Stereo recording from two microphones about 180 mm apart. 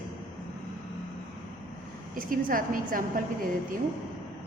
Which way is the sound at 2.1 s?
50° right (ahead or behind).